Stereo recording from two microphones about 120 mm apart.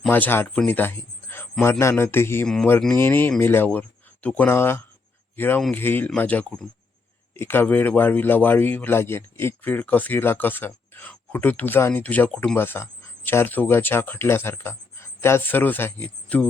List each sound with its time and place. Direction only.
0.1 s speech: 15° left (ahead or behind)
0.7 s a sound: 15° left (ahead or behind)
1.8 s a man's voice: 20° left (ahead or behind)